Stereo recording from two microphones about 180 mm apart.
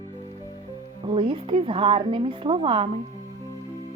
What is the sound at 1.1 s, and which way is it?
A woman's voice, 30° right (ahead or behind).